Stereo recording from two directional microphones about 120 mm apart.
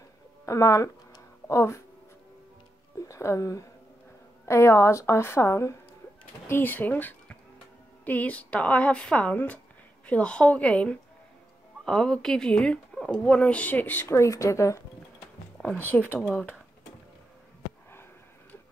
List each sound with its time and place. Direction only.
0.5 s speech: 25° left (ahead or behind)
3.0 s a woman's voice: 25° left (ahead or behind)
15.5 s a sound: 5° left (ahead or behind)
15.8 s speech: 15° left (ahead or behind)